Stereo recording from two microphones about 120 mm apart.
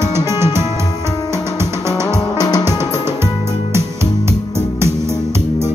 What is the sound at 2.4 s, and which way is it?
Music, 30° left (ahead or behind).